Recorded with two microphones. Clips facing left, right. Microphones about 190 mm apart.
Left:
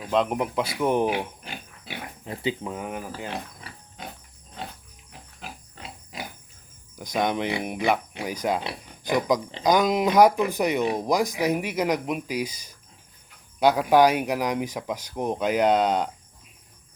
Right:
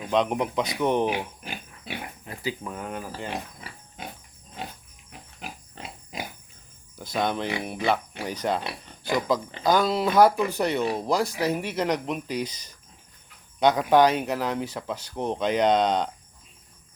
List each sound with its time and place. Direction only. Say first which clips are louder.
0.1 s speech: even; centre (ahead or behind)
2.2 s speech: left 6 dB; 25° left (ahead or behind)
5.4 s pig: right 1 dB; 15° right (ahead or behind)
6.9 s speech: left 2 dB; 15° left (ahead or behind)